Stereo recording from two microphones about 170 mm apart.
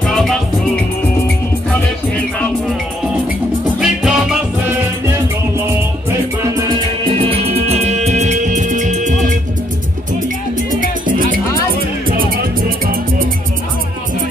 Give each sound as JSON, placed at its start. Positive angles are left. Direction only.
{"t": 0.0, "sound": "music", "side_deg": 0}
{"t": 3.8, "sound": "music", "side_deg": -5}
{"t": 6.7, "sound": "music", "side_deg": -30}
{"t": 10.7, "sound": "music", "side_deg": -55}